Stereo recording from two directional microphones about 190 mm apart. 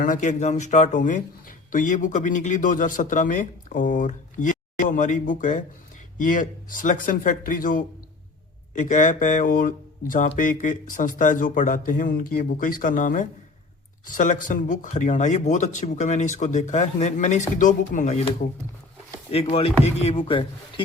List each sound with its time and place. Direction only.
0.0 s speech: 40° left (ahead or behind)